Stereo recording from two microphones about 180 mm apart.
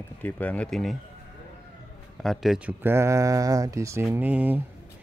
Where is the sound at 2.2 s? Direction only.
Centre (ahead or behind).